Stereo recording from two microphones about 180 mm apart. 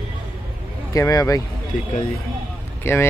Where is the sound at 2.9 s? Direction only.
15° left (ahead or behind).